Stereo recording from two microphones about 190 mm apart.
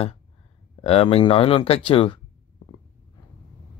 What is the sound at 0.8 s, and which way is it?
Speech, 30° left (ahead or behind).